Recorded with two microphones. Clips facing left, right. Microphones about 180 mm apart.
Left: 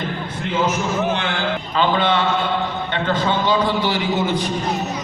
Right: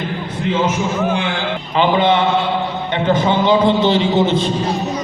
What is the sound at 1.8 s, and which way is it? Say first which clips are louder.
A man's voice: right 4 dB; 15° right (ahead or behind).